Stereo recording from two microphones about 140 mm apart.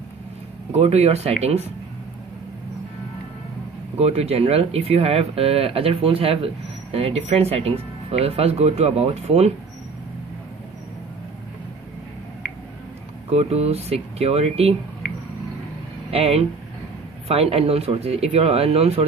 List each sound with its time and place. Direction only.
0.7 s speech: 50° right (ahead or behind)
4.0 s speech: 45° right (ahead or behind)
13.3 s speech: 50° right (ahead or behind)
16.1 s speech: 45° right (ahead or behind)